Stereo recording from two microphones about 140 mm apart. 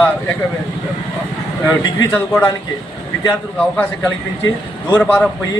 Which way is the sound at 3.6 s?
15° left (ahead or behind).